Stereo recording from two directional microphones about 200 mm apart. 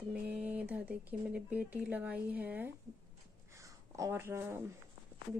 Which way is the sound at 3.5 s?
15° right (ahead or behind).